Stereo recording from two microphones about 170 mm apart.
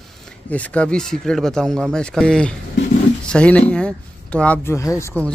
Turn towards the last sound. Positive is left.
turn(degrees=10)  # may be behind; listen again after turning